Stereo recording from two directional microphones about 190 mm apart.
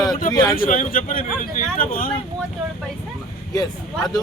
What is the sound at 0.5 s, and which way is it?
Speech, 45° left (ahead or behind).